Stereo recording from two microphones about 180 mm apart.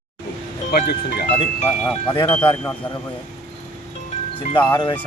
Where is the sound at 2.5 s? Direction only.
5° left (ahead or behind).